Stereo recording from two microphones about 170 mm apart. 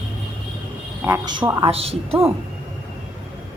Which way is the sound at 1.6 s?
35° right (ahead or behind).